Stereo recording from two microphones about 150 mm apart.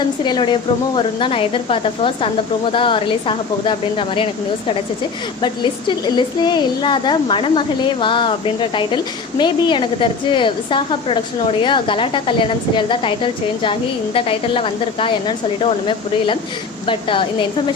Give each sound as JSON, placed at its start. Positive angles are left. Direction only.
{"t": 0.3, "sound": "a woman's voice", "side_deg": 30}
{"t": 5.4, "sound": "a woman's voice", "side_deg": 30}